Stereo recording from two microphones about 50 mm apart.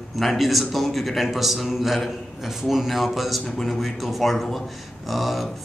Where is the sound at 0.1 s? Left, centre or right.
Centre.